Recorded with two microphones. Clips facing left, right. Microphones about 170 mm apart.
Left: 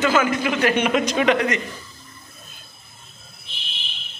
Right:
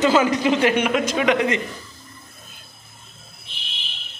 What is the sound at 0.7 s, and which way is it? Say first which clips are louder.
Speech: even; 5° right (ahead or behind).